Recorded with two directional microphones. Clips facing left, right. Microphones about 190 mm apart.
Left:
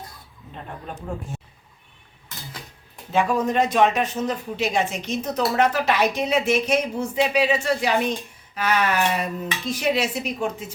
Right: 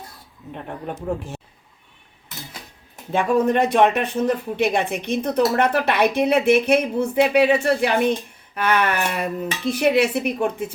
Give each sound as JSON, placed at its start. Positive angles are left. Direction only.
{"t": 2.9, "sound": "speech", "side_deg": -55}